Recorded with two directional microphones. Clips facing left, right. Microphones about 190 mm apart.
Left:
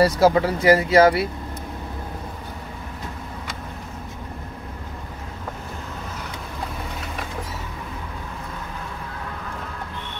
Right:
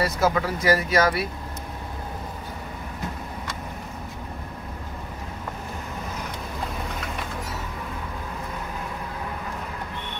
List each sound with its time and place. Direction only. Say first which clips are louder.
0.0 s speech: left 6 dB; 30° left (ahead or behind)